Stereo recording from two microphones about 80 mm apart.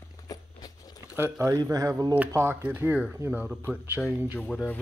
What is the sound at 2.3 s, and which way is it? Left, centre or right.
Speech, right.